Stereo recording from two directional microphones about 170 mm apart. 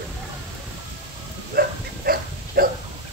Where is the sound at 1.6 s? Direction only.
60° right (ahead or behind).